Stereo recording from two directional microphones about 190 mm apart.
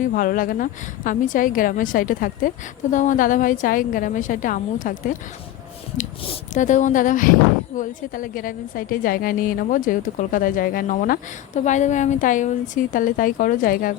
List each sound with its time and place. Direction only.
0.0 s a woman's voice: 45° left (ahead or behind)